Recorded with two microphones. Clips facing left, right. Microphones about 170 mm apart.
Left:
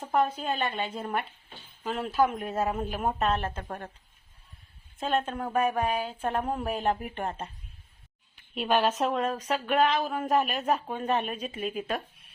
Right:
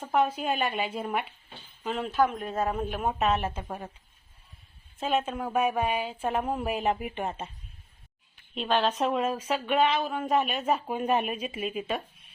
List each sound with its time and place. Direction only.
0.0 s speech: centre (ahead or behind)
4.9 s speech: 5° right (ahead or behind)
8.5 s speech: 10° left (ahead or behind)
10.9 s speech: 10° right (ahead or behind)